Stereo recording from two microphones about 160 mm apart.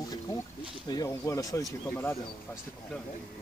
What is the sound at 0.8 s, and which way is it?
Speech, 20° left (ahead or behind).